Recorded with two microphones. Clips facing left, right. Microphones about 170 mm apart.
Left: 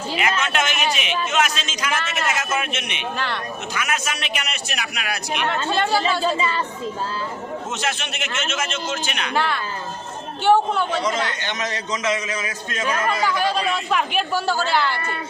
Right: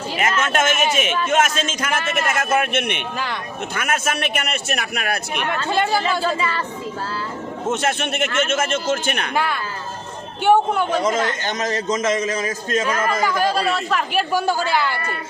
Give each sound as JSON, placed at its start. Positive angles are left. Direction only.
{"t": 0.2, "sound": "a man's voice", "side_deg": -45}
{"t": 5.7, "sound": "a woman's voice", "side_deg": -10}
{"t": 6.2, "sound": "speech", "side_deg": 20}
{"t": 7.7, "sound": "a man's voice", "side_deg": -50}
{"t": 9.3, "sound": "a woman's voice", "side_deg": -10}
{"t": 11.0, "sound": "a man's voice", "side_deg": -45}
{"t": 13.7, "sound": "a woman's voice", "side_deg": 0}